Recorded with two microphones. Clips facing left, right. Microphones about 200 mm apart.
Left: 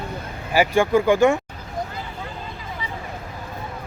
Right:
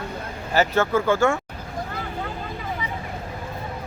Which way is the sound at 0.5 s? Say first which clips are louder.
Left 3 dB; 15° left (ahead or behind).